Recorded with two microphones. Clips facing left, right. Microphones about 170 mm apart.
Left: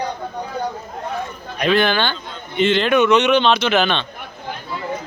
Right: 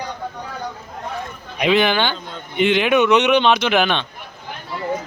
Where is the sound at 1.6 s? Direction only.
15° right (ahead or behind).